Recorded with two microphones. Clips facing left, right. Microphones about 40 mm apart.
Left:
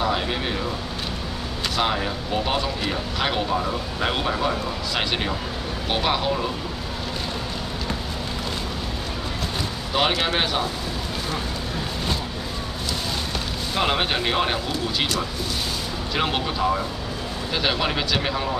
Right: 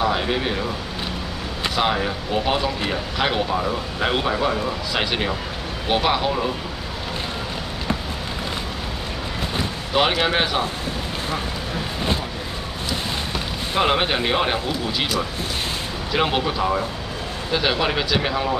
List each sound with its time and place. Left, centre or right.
0.0 s speech: centre
1.8 s speech: centre
9.9 s speech: centre
13.3 s speech: centre